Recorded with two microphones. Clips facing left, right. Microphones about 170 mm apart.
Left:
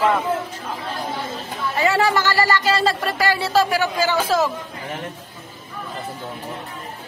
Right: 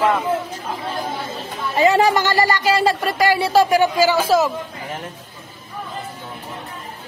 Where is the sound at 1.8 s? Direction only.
20° right (ahead or behind).